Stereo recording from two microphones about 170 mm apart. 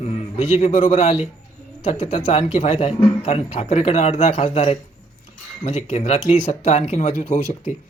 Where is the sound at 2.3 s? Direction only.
35° left (ahead or behind).